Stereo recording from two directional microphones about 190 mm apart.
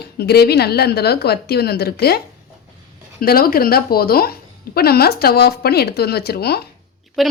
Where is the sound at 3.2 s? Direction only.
50° left (ahead or behind).